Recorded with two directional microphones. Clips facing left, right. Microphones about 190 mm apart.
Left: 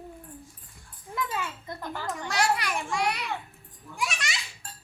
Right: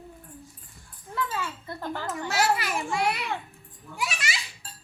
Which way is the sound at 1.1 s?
15° left (ahead or behind).